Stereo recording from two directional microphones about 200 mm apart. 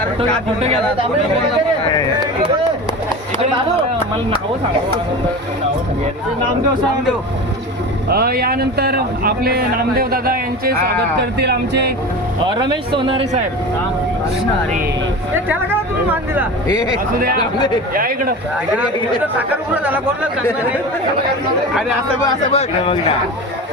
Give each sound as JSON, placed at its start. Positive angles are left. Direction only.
{"t": 8.1, "sound": "a man's voice", "side_deg": -50}
{"t": 12.5, "sound": "a man's voice", "side_deg": -20}
{"t": 16.6, "sound": "speech", "side_deg": 20}
{"t": 17.9, "sound": "a man's voice", "side_deg": -45}
{"t": 18.7, "sound": "a man's voice", "side_deg": -10}
{"t": 22.5, "sound": "speech", "side_deg": 30}